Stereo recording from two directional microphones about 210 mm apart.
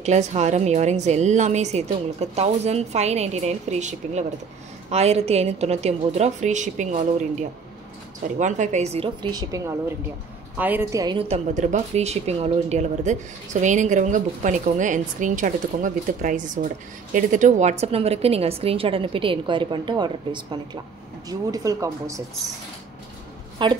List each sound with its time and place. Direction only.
0.0 s a woman's voice: 35° right (ahead or behind)
10.6 s a woman's voice: 10° right (ahead or behind)
23.6 s a woman's voice: 20° right (ahead or behind)